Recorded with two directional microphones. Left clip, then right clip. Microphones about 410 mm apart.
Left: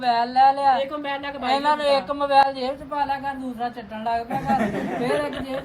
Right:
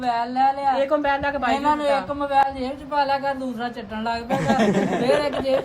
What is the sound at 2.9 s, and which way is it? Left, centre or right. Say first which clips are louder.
Speech: right 5 dB; centre.